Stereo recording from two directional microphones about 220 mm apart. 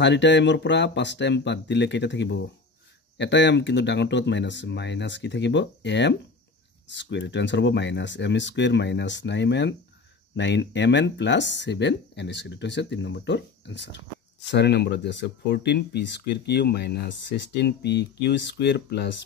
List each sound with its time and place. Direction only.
0.0 s speech: 55° left (ahead or behind)